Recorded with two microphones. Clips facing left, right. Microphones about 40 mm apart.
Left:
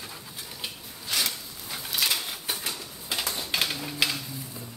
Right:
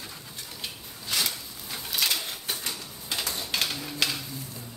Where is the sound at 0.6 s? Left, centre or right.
Centre.